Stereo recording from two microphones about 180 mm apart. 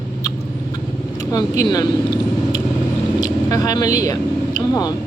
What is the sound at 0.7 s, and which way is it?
Vehicle, 20° left (ahead or behind).